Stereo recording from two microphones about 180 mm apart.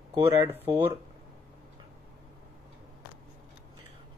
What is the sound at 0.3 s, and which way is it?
Speech, 10° right (ahead or behind).